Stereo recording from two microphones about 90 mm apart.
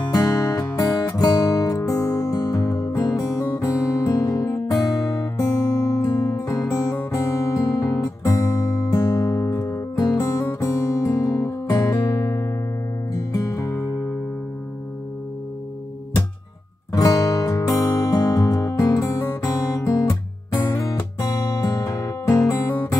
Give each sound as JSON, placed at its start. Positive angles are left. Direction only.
{"t": 0.1, "sound": "music", "side_deg": 45}
{"t": 7.1, "sound": "guitar", "side_deg": 40}
{"t": 13.1, "sound": "music", "side_deg": 45}
{"t": 16.9, "sound": "music", "side_deg": 40}